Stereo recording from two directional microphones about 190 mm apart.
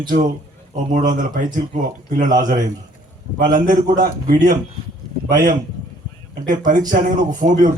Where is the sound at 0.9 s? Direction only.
45° right (ahead or behind).